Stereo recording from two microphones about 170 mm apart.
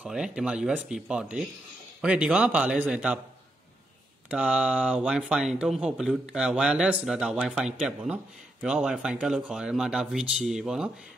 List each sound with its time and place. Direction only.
0.0 s speech: 5° right (ahead or behind)
4.3 s speech: 5° right (ahead or behind)